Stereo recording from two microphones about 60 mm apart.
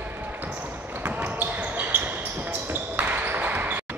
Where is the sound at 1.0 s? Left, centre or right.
Right.